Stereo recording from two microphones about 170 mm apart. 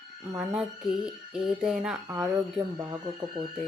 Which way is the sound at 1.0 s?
5° right (ahead or behind).